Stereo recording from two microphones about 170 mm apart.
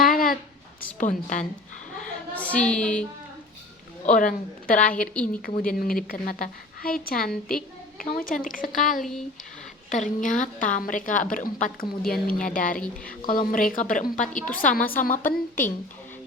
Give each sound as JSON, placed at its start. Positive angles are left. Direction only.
{"t": 0.0, "sound": "a sound", "side_deg": 55}
{"t": 0.9, "sound": "a woman's voice", "side_deg": 45}
{"t": 2.0, "sound": "a sound", "side_deg": 10}
{"t": 4.0, "sound": "a woman's voice", "side_deg": 50}
{"t": 4.9, "sound": "a woman's voice", "side_deg": 5}
{"t": 5.3, "sound": "a woman's voice", "side_deg": 50}
{"t": 9.0, "sound": "a woman's voice", "side_deg": 0}
{"t": 9.9, "sound": "a woman's voice", "side_deg": 50}
{"t": 15.2, "sound": "a woman's voice", "side_deg": 10}